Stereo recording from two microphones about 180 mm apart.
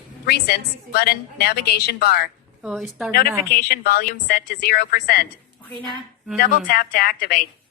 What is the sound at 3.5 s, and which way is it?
A woman's voice, 60° left (ahead or behind).